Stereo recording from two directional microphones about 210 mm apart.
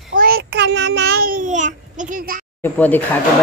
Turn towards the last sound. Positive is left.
turn(degrees=10)  # may be behind; listen again after turning